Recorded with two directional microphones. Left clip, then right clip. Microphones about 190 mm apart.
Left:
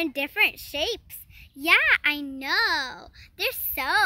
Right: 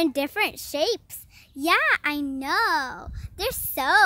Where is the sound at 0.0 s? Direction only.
40° right (ahead or behind).